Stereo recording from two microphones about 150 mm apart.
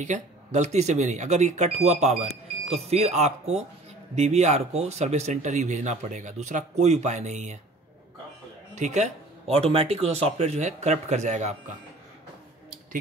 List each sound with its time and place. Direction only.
0.0 s speech: 50° right (ahead or behind)
8.7 s speech: 50° right (ahead or behind)